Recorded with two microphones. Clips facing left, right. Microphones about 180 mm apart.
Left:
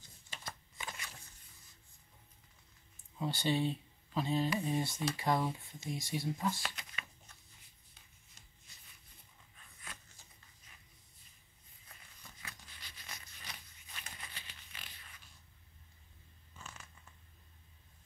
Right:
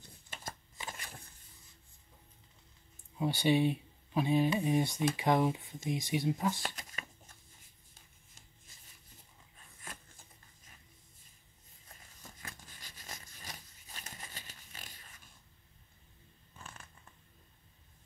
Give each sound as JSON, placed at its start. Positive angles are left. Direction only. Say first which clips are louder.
{"t": 0.0, "sound": "a sound", "louder": "right 3 dB", "side_deg": -50}
{"t": 3.2, "sound": "speech", "louder": "right 5 dB", "side_deg": -15}
{"t": 6.6, "sound": "shuffling cards", "louder": "right 3 dB", "side_deg": -40}
{"t": 9.6, "sound": "a sound", "louder": "right 3 dB", "side_deg": -45}
{"t": 11.9, "sound": "biting", "louder": "right 4 dB", "side_deg": -45}
{"t": 16.5, "sound": "scissors", "louder": "right 1 dB", "side_deg": -55}